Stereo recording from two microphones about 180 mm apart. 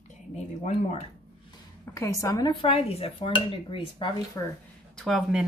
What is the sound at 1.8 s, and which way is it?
Dishes, 15° left (ahead or behind).